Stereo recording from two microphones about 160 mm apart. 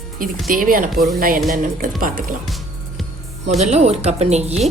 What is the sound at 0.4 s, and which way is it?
Speech, 60° right (ahead or behind).